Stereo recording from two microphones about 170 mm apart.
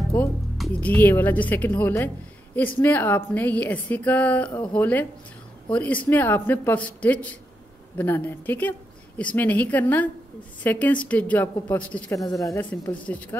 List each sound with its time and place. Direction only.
0.6 s a woman's voice: 10° left (ahead or behind)